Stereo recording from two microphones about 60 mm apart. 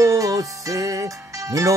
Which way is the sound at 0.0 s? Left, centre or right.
Right.